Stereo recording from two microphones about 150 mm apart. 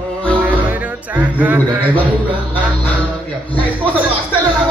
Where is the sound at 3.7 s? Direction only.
10° right (ahead or behind).